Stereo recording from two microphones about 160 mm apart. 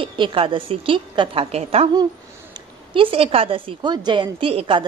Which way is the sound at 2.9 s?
35° right (ahead or behind).